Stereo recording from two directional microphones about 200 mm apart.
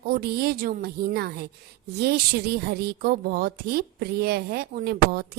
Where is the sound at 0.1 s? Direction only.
50° right (ahead or behind).